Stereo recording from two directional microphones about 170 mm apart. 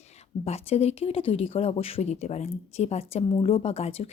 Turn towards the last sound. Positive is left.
turn(degrees=35)  # may be behind; listen again after turning